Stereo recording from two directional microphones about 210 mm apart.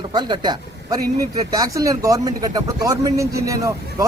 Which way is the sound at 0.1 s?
20° right (ahead or behind).